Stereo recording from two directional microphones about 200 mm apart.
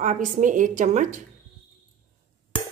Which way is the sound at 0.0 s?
40° right (ahead or behind).